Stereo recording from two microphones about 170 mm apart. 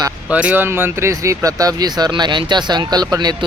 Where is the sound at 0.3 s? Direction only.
10° right (ahead or behind).